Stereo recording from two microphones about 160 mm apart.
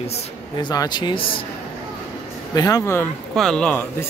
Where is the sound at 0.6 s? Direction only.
25° left (ahead or behind).